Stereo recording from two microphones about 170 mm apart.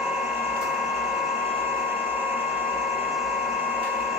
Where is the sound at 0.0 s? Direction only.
5° right (ahead or behind).